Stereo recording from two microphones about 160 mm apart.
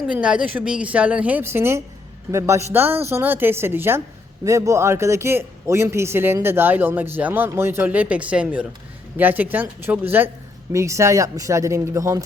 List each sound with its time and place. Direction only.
0.1 s a man's voice: 5° right (ahead or behind)